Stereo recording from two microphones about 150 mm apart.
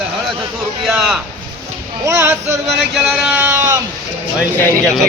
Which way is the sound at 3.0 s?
5° right (ahead or behind).